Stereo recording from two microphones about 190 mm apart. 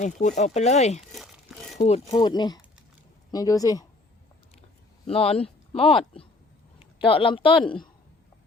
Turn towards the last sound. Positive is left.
turn(degrees=25)  # may be behind; listen again after turning